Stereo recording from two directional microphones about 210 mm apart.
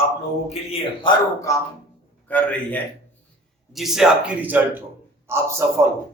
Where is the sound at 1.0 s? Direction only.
15° left (ahead or behind).